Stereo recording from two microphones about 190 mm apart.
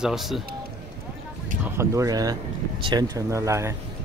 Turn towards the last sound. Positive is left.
turn(degrees=-15)  # may be behind; listen again after turning